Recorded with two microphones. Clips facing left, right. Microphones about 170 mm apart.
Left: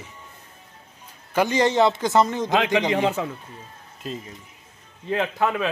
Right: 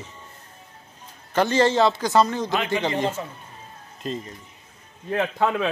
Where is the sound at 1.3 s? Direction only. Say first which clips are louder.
Even; 15° left (ahead or behind).